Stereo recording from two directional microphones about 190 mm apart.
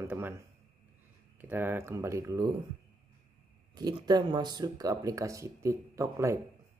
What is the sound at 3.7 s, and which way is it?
Speech, 20° right (ahead or behind).